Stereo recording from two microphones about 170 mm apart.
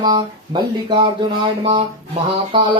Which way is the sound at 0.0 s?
25° right (ahead or behind).